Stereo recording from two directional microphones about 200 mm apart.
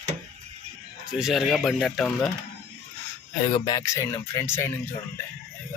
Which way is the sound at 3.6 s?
15° left (ahead or behind).